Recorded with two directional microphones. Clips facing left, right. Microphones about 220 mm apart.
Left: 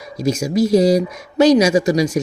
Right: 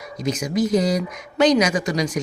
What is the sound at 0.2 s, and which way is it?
Speech, 25° left (ahead or behind).